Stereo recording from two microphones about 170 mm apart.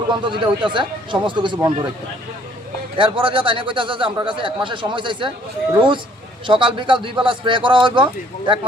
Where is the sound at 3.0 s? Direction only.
30° right (ahead or behind).